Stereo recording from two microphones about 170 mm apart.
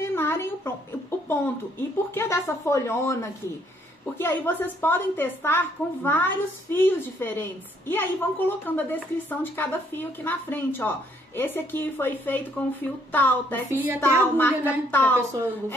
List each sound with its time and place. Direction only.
0.0 s a sound: 15° left (ahead or behind)
1.3 s a woman's voice: 15° left (ahead or behind)
13.7 s a woman's voice: 10° right (ahead or behind)
14.3 s a woman's voice: 10° left (ahead or behind)